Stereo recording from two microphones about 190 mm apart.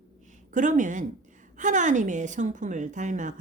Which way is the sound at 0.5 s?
40° right (ahead or behind).